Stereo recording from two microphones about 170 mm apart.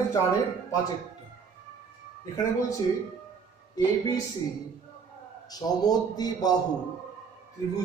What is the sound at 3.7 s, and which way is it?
Speech, 20° left (ahead or behind).